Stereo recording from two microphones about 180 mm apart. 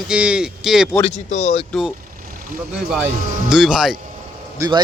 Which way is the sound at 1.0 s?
40° left (ahead or behind).